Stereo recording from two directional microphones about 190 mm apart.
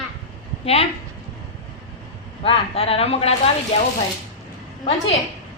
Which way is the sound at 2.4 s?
30° left (ahead or behind).